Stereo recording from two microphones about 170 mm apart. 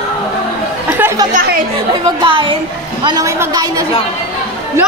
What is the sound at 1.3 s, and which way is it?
Speech, 55° right (ahead or behind).